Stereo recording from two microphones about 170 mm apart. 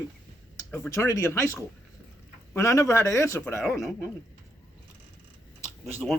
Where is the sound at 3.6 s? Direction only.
Centre (ahead or behind).